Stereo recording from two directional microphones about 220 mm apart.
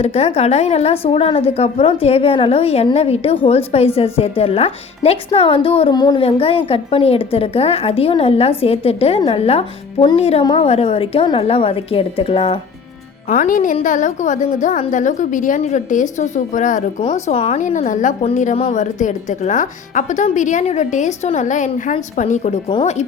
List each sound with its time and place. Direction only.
0.0 s speech: 30° left (ahead or behind)
13.3 s a woman's voice: 35° left (ahead or behind)